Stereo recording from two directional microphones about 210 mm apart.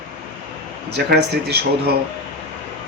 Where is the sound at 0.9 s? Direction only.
50° right (ahead or behind).